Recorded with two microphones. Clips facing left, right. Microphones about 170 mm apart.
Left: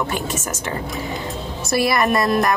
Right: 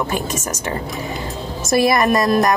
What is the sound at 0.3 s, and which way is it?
Speech, 40° right (ahead or behind).